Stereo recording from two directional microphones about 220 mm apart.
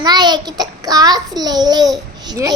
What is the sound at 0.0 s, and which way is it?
A child's voice, 20° right (ahead or behind).